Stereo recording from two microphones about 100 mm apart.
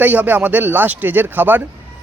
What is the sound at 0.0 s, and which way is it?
Speech, 15° right (ahead or behind).